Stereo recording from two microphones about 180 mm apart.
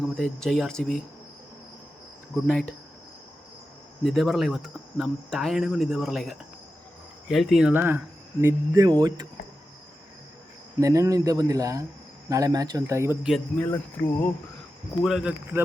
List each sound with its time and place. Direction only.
0.2 s speech: 5° left (ahead or behind)
2.3 s speech: 5° left (ahead or behind)
4.0 s speech: centre (ahead or behind); by 9.2 s 25° right (ahead or behind)
10.8 s speech: 15° right (ahead or behind)
13.6 s speech: 10° left (ahead or behind)
15.0 s speech: 5° right (ahead or behind)